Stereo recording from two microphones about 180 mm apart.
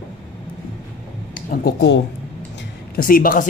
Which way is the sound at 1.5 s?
65° left (ahead or behind).